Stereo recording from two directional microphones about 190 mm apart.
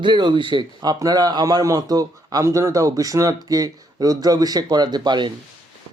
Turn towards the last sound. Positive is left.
turn(degrees=-25)  # may be behind; listen again after turning